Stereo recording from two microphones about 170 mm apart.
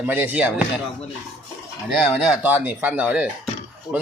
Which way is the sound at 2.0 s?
Centre (ahead or behind).